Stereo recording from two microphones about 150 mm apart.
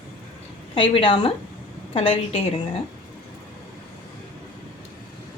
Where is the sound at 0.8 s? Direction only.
35° left (ahead or behind).